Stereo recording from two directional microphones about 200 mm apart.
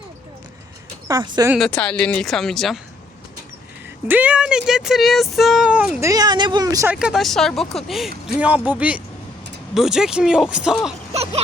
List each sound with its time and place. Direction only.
1.0 s speech: 20° right (ahead or behind)
1.5 s speech: 5° left (ahead or behind)
4.1 s speech: 5° right (ahead or behind)
6.0 s speech: 15° right (ahead or behind)
6.9 s speech: 5° right (ahead or behind)